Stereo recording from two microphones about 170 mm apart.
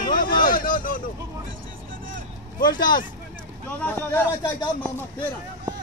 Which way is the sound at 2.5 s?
55° left (ahead or behind).